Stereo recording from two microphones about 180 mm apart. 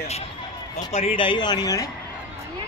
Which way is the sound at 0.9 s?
30° left (ahead or behind).